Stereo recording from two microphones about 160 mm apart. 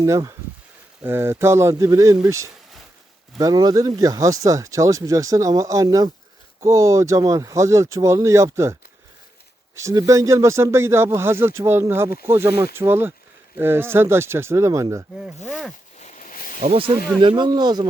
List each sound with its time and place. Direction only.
0.0 s speech: 20° right (ahead or behind)
9.7 s speech: 20° right (ahead or behind)
15.4 s speech: centre (ahead or behind)
16.0 s a sound: 50° left (ahead or behind)
16.6 s speech: 40° right (ahead or behind)